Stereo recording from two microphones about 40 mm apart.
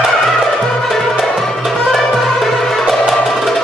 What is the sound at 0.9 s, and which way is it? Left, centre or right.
Music, centre.